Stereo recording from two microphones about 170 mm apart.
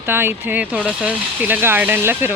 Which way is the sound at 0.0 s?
15° right (ahead or behind).